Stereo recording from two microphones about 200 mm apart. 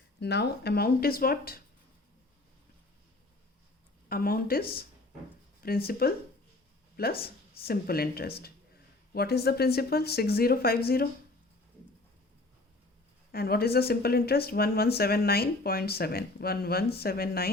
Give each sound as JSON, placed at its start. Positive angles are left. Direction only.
{"t": 0.2, "sound": "speech", "side_deg": 55}
{"t": 4.1, "sound": "speech", "side_deg": 50}
{"t": 13.3, "sound": "speech", "side_deg": 50}